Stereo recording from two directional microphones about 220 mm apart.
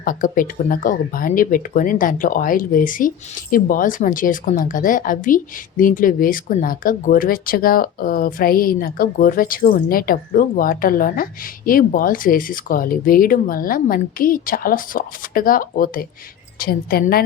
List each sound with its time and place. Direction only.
0.0 s a woman's voice: 40° left (ahead or behind)